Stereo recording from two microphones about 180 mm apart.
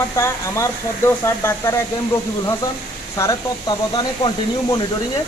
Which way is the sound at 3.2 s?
20° left (ahead or behind).